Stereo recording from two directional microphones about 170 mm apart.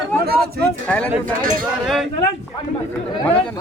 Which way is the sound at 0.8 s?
10° left (ahead or behind).